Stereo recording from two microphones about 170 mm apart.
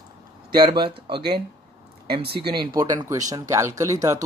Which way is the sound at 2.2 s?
70° right (ahead or behind).